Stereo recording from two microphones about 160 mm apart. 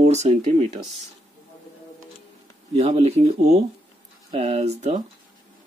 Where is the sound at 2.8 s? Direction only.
40° right (ahead or behind).